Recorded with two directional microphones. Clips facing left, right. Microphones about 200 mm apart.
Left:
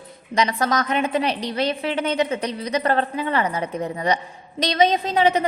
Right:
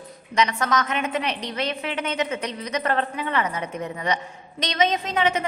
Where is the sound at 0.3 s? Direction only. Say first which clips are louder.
Left 1 dB; 35° left (ahead or behind).